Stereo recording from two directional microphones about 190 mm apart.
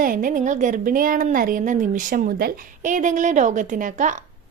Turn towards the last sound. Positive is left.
turn(degrees=-40)  # may be behind; listen again after turning